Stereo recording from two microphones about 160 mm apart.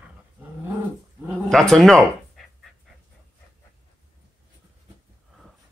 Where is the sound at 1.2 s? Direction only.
5° left (ahead or behind).